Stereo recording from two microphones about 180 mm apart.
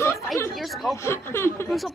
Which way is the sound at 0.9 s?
15° left (ahead or behind).